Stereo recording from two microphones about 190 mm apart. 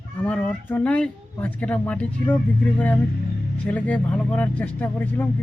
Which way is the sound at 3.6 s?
10° left (ahead or behind).